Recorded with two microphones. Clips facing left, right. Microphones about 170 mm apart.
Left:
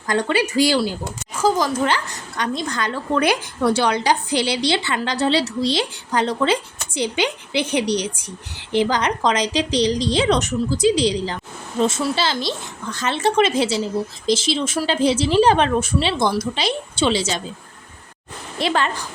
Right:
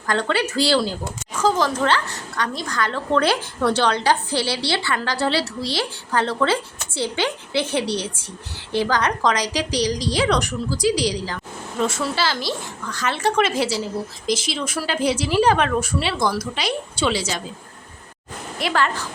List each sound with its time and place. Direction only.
0.1 s a woman's voice: 15° left (ahead or behind)
18.6 s a woman's voice: 20° left (ahead or behind)